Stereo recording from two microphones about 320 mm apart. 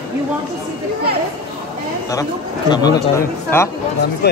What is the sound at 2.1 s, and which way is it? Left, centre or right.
A man's voice, centre.